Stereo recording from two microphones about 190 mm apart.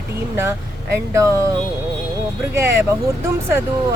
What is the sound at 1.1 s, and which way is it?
Speech, 15° right (ahead or behind).